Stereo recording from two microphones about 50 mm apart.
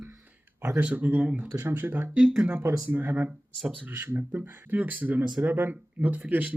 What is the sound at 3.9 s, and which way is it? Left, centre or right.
Speech, right.